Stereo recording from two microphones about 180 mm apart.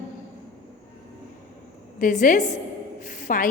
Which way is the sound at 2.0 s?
45° left (ahead or behind).